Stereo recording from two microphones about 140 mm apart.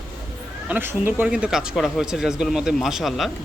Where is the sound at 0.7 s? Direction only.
15° right (ahead or behind).